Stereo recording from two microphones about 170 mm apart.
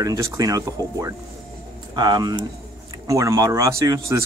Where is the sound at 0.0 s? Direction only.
20° right (ahead or behind).